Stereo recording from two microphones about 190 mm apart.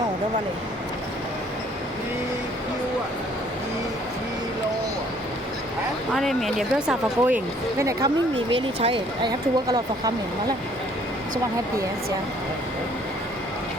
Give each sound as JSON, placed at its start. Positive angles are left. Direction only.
{"t": 6.1, "sound": "speech", "side_deg": 0}